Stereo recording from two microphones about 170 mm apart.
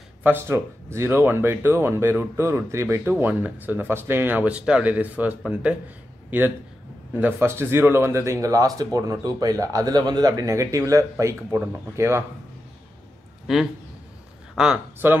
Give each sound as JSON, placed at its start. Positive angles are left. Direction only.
{"t": 0.2, "sound": "speech", "side_deg": -15}
{"t": 7.2, "sound": "speech", "side_deg": -15}
{"t": 14.6, "sound": "speech", "side_deg": -10}